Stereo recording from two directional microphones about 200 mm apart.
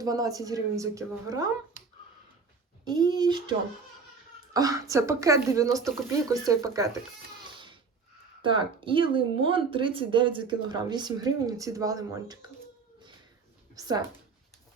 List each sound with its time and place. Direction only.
0.0 s speech: 15° right (ahead or behind)
2.8 s speech: 20° right (ahead or behind)
4.5 s speech: 15° right (ahead or behind)
8.4 s speech: 25° right (ahead or behind)
13.7 s speech: 20° right (ahead or behind)